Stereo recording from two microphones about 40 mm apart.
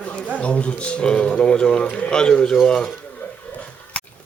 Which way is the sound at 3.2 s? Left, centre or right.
Left.